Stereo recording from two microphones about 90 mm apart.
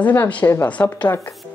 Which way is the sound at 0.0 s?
20° left (ahead or behind).